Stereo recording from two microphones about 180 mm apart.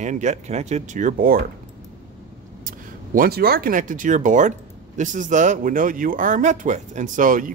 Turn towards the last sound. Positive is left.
turn(degrees=-45)  # may be behind; listen again after turning